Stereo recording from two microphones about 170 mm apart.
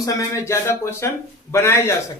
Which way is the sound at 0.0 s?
20° left (ahead or behind).